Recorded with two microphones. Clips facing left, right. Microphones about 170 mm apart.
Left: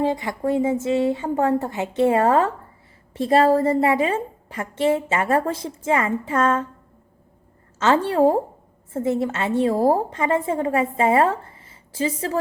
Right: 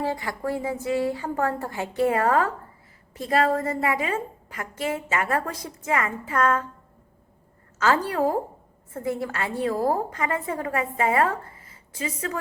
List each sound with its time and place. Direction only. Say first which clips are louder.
0.0 s a woman's voice: left 5 dB; 20° left (ahead or behind)
7.8 s a woman's voice: left 5 dB; 25° left (ahead or behind)